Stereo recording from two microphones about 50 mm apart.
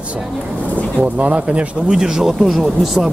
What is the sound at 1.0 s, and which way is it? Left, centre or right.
Speech, right.